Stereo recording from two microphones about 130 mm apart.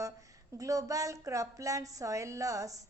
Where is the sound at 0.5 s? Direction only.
25° right (ahead or behind).